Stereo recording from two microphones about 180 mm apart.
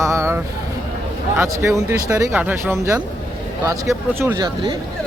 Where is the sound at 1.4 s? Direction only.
15° right (ahead or behind).